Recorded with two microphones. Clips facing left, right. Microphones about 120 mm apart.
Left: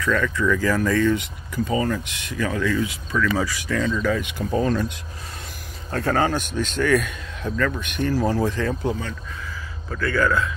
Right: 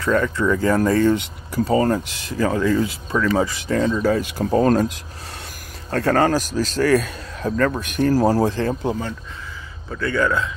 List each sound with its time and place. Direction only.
0.0 s speech: 30° right (ahead or behind)
5.9 s a man's voice: 50° right (ahead or behind); by 10.5 s 25° right (ahead or behind)